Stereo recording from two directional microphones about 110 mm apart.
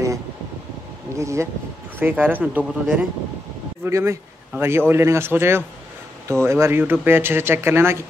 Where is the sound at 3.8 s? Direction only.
25° right (ahead or behind).